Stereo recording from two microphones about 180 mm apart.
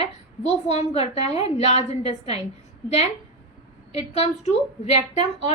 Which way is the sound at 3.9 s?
35° left (ahead or behind).